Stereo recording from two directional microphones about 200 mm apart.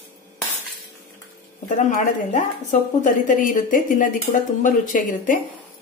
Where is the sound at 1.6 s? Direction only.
40° left (ahead or behind).